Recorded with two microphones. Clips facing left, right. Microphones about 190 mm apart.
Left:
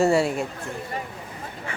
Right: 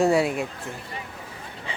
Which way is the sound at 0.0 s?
Centre (ahead or behind).